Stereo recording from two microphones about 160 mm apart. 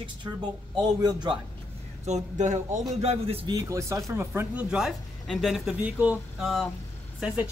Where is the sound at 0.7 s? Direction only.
25° right (ahead or behind).